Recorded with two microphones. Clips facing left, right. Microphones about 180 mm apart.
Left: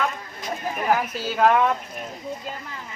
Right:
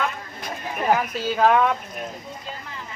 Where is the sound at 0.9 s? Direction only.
Centre (ahead or behind).